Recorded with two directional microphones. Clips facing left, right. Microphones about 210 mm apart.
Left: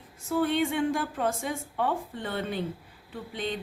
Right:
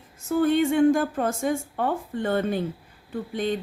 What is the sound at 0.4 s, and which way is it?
A woman's voice, 45° right (ahead or behind).